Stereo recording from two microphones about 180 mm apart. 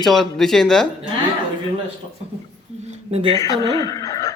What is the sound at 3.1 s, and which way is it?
Speech, 30° right (ahead or behind).